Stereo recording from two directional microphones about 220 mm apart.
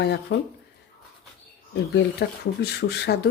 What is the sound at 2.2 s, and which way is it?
Speech, 45° left (ahead or behind).